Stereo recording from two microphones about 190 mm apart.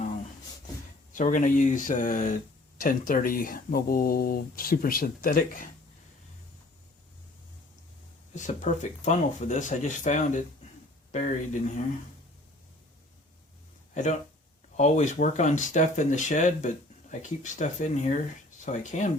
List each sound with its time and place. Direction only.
1.1 s speech: 40° left (ahead or behind)
8.4 s speech: 40° left (ahead or behind)
13.9 s speech: 40° left (ahead or behind)